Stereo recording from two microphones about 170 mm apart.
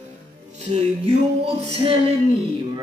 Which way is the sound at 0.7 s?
40° right (ahead or behind).